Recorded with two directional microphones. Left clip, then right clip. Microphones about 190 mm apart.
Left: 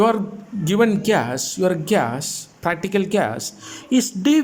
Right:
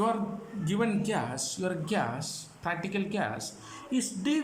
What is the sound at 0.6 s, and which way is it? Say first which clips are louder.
Speech: left 13 dB; 50° left (ahead or behind).